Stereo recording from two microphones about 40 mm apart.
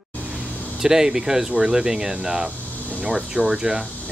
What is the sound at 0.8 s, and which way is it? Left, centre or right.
Speech, centre.